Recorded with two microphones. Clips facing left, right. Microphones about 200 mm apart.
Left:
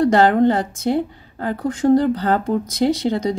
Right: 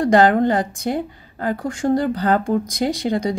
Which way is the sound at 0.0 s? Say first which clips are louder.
Left 1 dB; 15° right (ahead or behind).